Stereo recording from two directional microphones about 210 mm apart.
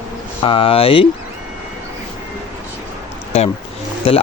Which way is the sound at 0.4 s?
25° left (ahead or behind).